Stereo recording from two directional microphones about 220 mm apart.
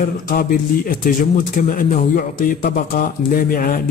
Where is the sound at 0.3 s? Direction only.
40° left (ahead or behind).